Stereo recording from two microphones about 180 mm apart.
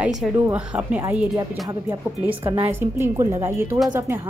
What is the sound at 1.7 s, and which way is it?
A woman's voice, 15° right (ahead or behind).